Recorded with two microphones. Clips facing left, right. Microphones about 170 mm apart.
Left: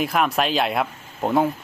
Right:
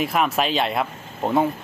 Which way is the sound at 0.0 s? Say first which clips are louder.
Even; centre (ahead or behind).